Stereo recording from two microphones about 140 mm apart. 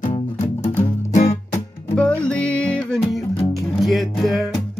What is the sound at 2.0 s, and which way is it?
Music, 5° left (ahead or behind).